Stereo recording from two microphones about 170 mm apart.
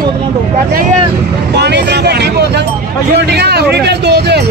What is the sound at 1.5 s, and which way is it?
Speech, 80° right.